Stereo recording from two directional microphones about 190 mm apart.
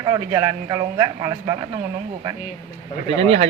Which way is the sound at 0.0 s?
20° right (ahead or behind).